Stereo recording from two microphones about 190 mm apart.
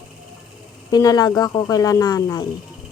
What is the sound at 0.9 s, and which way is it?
Speech, 20° left (ahead or behind).